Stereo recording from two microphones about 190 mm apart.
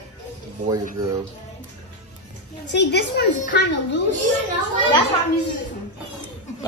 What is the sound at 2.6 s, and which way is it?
A woman's voice, 65° left (ahead or behind).